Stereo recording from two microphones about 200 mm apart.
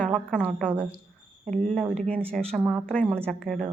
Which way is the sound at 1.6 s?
5° left (ahead or behind).